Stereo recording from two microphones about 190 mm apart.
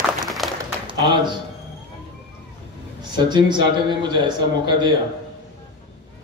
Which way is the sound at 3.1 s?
25° right (ahead or behind).